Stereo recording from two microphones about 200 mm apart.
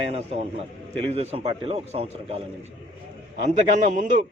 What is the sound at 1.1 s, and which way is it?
A man's voice, 30° right (ahead or behind).